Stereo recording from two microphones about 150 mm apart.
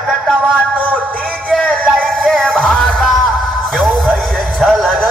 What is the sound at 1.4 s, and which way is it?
Music, 5° left (ahead or behind).